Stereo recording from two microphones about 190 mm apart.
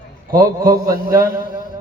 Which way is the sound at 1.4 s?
45° left (ahead or behind).